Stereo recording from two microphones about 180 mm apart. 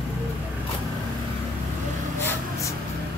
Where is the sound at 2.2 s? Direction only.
10° left (ahead or behind).